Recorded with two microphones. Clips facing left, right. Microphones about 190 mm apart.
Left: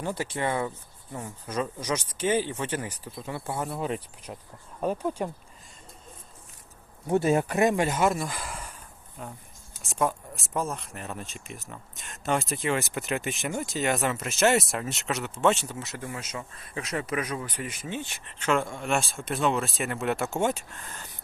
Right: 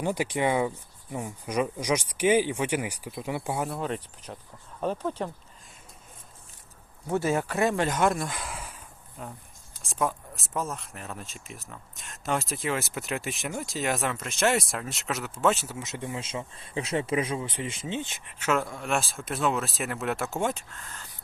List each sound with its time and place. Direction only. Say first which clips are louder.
0.0 s speech: right 3 dB; 15° right (ahead or behind)
3.7 s speech: left 1 dB; 5° left (ahead or behind)
7.1 s speech: left 3 dB; 20° left (ahead or behind); by 15.8 s 5° right (ahead or behind)
15.8 s speech: right 2 dB; 20° right (ahead or behind)
18.3 s speech: left 1 dB; 10° right (ahead or behind)